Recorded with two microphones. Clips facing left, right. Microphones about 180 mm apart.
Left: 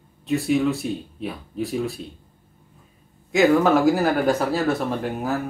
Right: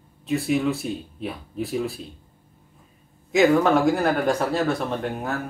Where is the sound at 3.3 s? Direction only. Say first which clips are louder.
Left 1 dB; centre (ahead or behind).